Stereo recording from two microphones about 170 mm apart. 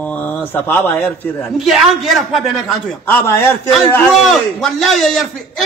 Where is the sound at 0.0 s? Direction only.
10° left (ahead or behind).